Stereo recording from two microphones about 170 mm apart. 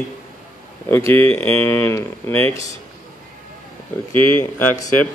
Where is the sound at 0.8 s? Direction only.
10° left (ahead or behind).